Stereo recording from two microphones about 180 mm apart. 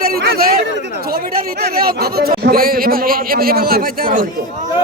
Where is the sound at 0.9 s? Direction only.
60° right (ahead or behind).